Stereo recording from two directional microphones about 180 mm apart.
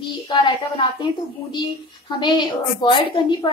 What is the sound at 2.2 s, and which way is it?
A woman's voice, 25° left (ahead or behind).